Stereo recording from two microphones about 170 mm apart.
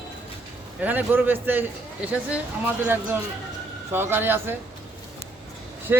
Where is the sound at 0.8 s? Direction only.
10° right (ahead or behind).